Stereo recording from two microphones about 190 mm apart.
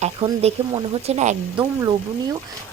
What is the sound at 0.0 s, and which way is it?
Speech, 35° right (ahead or behind).